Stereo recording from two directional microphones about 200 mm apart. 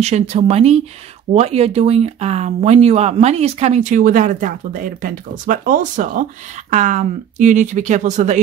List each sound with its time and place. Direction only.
0.0 s speech: 30° right (ahead or behind)